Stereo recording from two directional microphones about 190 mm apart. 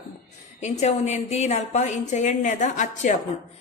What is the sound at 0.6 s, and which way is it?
A woman's voice, 35° left (ahead or behind).